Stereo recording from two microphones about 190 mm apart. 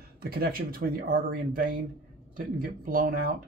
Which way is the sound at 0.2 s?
50° right (ahead or behind).